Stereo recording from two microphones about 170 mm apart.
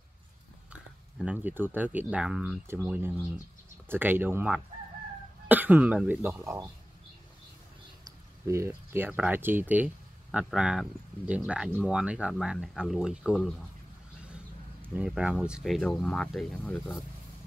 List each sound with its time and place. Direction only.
1.1 s speech: 5° right (ahead or behind)
8.5 s speech: 15° right (ahead or behind); by 17.0 s 5° left (ahead or behind)